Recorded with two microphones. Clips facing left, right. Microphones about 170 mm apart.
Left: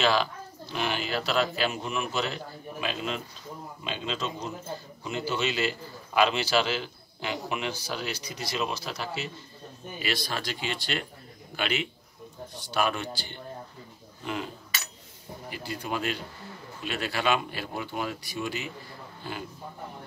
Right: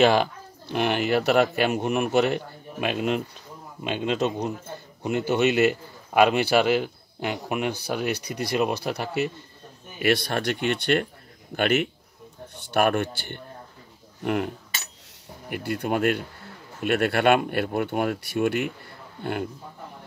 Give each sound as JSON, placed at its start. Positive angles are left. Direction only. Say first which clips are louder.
{"t": 0.0, "sound": "a man's voice", "louder": "right 6 dB", "side_deg": -55}
{"t": 15.5, "sound": "a man's voice", "louder": "right 8 dB", "side_deg": -60}